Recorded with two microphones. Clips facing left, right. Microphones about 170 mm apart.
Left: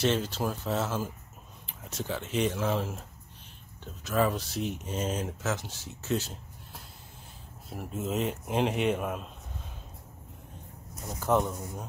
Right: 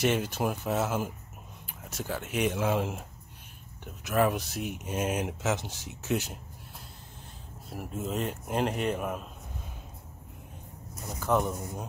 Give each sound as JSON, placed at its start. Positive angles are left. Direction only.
{"t": 0.0, "sound": "speech", "side_deg": -15}
{"t": 7.7, "sound": "a man's voice", "side_deg": 0}
{"t": 11.1, "sound": "a man's voice", "side_deg": 0}
{"t": 11.4, "sound": "speech", "side_deg": -15}